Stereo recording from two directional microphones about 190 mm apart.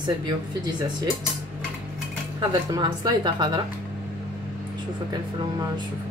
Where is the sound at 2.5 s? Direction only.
20° right (ahead or behind).